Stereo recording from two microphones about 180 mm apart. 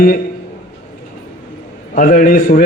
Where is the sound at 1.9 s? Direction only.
45° left (ahead or behind).